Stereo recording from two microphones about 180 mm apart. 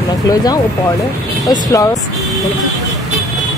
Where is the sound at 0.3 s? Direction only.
20° left (ahead or behind).